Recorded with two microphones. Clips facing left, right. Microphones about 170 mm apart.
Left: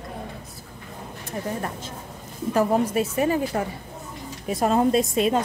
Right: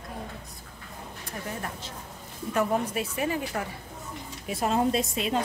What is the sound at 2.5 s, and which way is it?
A woman's voice, 40° left (ahead or behind).